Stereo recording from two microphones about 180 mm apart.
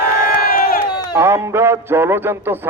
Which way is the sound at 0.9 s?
25° left (ahead or behind).